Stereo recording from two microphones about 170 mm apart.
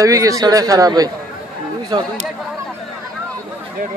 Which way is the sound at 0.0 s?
20° right (ahead or behind).